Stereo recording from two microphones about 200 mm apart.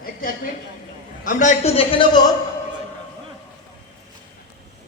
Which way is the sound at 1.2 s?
40° left (ahead or behind).